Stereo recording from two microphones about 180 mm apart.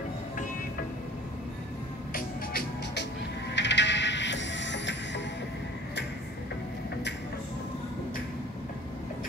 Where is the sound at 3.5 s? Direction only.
80° left.